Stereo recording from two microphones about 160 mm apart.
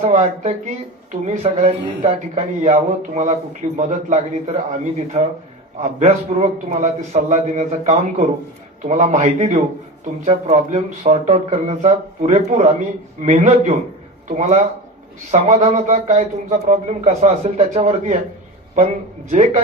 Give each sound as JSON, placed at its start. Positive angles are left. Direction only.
{"t": 0.0, "sound": "a man's voice", "side_deg": -40}
{"t": 19.3, "sound": "a man's voice", "side_deg": -45}